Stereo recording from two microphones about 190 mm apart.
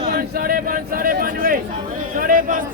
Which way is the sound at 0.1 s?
50° right (ahead or behind).